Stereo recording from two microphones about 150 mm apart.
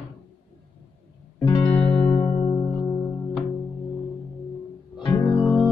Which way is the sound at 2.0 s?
15° left (ahead or behind).